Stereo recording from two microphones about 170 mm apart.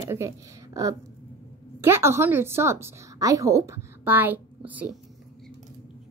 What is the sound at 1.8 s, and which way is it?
Speech, 15° right (ahead or behind).